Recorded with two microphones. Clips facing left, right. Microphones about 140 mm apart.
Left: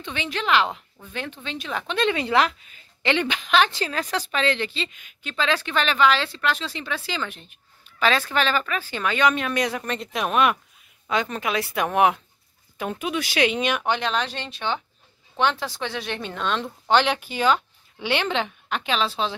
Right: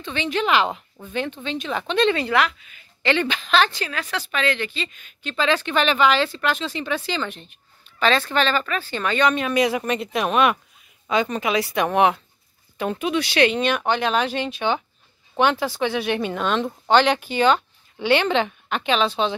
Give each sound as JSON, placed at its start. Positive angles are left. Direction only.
{"t": 0.1, "sound": "speech", "side_deg": 0}
{"t": 2.3, "sound": "speech", "side_deg": 35}
{"t": 3.0, "sound": "speech", "side_deg": 20}
{"t": 3.7, "sound": "a woman's voice", "side_deg": 30}
{"t": 4.9, "sound": "a woman's voice", "side_deg": 10}
{"t": 5.3, "sound": "speech", "side_deg": 0}